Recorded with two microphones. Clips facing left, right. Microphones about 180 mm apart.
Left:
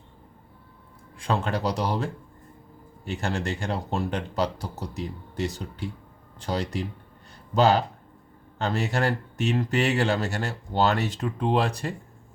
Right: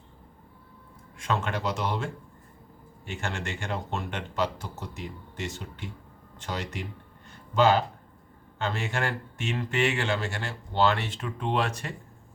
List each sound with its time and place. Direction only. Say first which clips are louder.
1.2 s speech: left 3 dB; 35° left (ahead or behind)
3.1 s speech: left 5 dB; 35° left (ahead or behind)